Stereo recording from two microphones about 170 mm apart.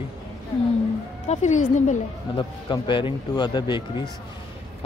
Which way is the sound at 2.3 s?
30° left (ahead or behind).